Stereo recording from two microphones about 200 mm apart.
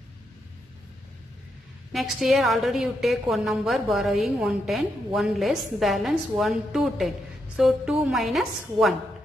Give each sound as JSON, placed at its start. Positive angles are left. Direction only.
{"t": 1.9, "sound": "a woman's voice", "side_deg": 0}